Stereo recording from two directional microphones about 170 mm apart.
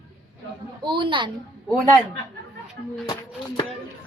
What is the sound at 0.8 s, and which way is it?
Speech, 30° right (ahead or behind).